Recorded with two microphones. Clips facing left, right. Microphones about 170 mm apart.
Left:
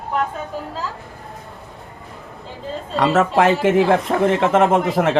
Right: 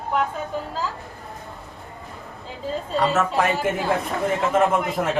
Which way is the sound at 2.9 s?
90° left.